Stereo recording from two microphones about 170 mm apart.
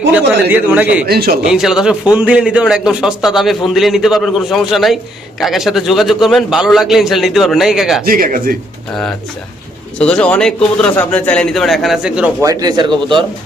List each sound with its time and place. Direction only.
0.1 s a man's voice: 10° right (ahead or behind)
1.0 s a man's voice: 65° right (ahead or behind)
1.5 s a man's voice: centre (ahead or behind)
8.0 s speech: 60° right (ahead or behind)
10.0 s a man's voice: 5° left (ahead or behind)
12.4 s speech: 20° right (ahead or behind)